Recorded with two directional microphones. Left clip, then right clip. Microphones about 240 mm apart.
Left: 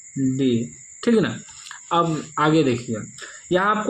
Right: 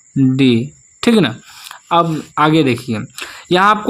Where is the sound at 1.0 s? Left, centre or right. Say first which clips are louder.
Right 6 dB; right.